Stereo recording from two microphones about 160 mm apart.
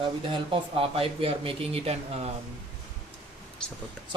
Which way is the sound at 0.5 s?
35° right (ahead or behind).